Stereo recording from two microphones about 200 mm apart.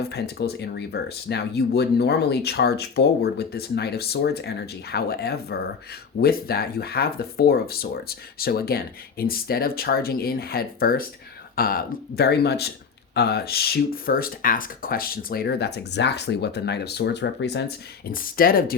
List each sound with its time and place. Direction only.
0.0 s speech: 50° left (ahead or behind)